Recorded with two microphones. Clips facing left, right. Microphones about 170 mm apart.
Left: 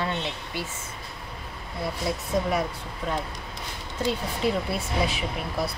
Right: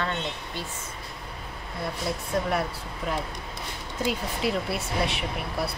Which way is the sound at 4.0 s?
5° right (ahead or behind).